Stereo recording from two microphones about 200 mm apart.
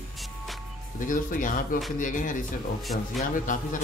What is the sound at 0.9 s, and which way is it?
Speech, 40° left (ahead or behind).